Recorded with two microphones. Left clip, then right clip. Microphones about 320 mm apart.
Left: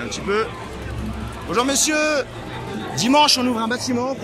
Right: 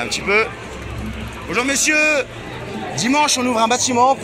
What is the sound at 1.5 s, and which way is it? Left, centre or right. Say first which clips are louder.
A man's voice: right 2 dB; centre.